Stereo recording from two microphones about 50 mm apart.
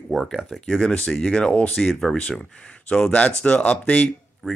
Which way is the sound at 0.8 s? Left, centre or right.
Left.